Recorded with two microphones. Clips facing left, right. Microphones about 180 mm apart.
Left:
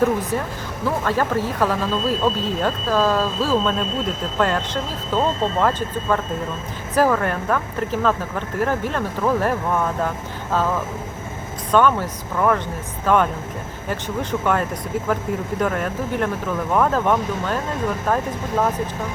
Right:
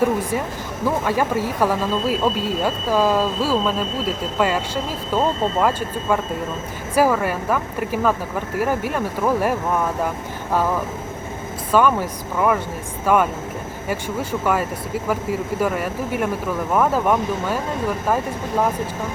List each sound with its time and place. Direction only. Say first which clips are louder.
0.0 s speech: even; 10° right (ahead or behind)
11.7 s speech: even; 10° right (ahead or behind)